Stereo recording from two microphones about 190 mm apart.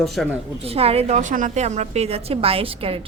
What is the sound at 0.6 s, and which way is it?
A woman's voice, 30° right (ahead or behind).